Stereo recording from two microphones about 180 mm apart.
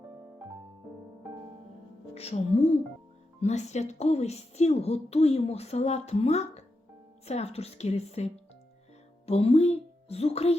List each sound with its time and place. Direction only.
2.1 s a woman's voice: 35° left (ahead or behind)